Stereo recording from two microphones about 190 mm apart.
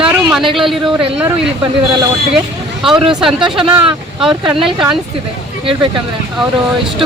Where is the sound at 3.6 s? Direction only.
30° right (ahead or behind).